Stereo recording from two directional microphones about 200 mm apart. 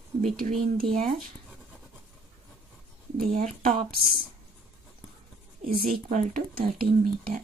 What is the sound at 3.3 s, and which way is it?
Speech, 40° right (ahead or behind).